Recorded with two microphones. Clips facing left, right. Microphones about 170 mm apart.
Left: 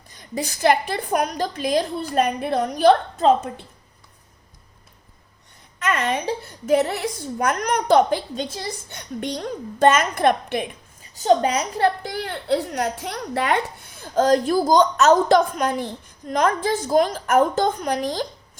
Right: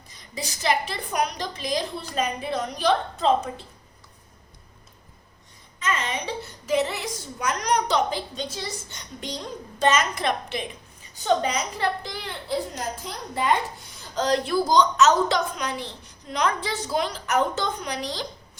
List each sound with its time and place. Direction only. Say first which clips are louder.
0.2 s a woman's voice: left 9 dB; 55° left (ahead or behind)
5.8 s a woman's voice: left 5 dB; 65° left (ahead or behind); by 18.3 s 50° left (ahead or behind)